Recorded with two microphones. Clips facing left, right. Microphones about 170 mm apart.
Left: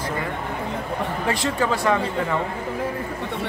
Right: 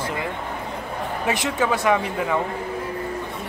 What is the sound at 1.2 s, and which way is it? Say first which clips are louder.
Speech: right 1 dB; 15° right (ahead or behind).